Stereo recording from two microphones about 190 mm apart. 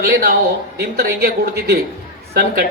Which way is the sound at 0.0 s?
55° right (ahead or behind).